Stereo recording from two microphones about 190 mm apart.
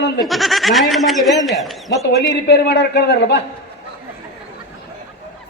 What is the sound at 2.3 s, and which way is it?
A man's voice, 65° left (ahead or behind).